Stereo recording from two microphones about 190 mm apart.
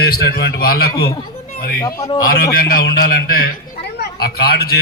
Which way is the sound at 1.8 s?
20° left (ahead or behind).